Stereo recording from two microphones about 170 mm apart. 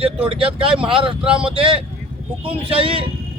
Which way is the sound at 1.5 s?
30° right (ahead or behind).